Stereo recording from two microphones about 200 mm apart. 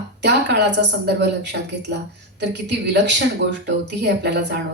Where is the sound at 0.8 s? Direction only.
60° right (ahead or behind).